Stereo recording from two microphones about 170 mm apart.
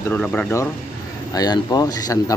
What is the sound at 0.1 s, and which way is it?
Speech, 10° left (ahead or behind).